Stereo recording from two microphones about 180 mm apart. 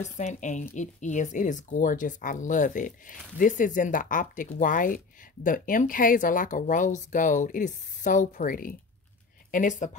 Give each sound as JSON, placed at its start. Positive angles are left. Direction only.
{"t": 0.0, "sound": "a woman's voice", "side_deg": 40}